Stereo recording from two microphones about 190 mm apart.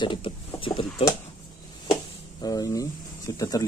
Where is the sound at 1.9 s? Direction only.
20° left (ahead or behind).